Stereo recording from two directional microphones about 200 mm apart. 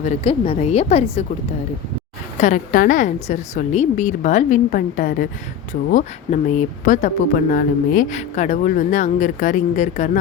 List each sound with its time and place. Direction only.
0.0 s speech: 30° left (ahead or behind)
2.4 s speech: 40° left (ahead or behind)